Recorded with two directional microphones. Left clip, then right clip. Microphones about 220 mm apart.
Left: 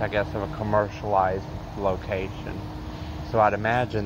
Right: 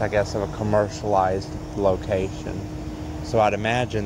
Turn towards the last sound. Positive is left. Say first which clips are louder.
# right 1 dB
turn(degrees=-10)  # may be behind; listen again after turning